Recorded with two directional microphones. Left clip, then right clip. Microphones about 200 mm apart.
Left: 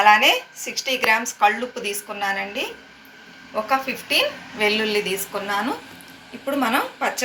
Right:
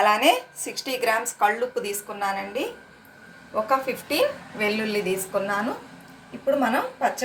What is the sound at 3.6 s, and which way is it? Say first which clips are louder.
A woman's voice: left 2 dB; 50° right (ahead or behind).